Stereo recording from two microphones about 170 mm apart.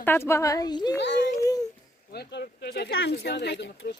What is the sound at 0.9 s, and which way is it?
Speech, 90° left.